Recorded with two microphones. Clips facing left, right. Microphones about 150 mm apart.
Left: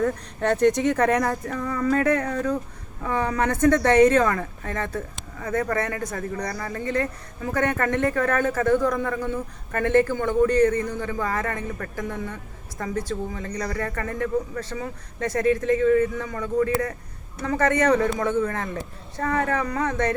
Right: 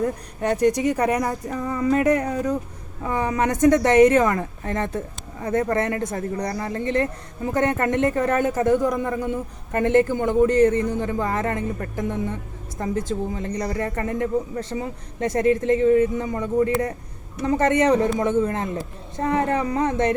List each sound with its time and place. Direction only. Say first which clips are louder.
0.0 s speech: even; 10° right (ahead or behind)